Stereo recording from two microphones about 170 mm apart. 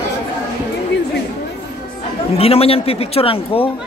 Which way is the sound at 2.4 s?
35° left (ahead or behind).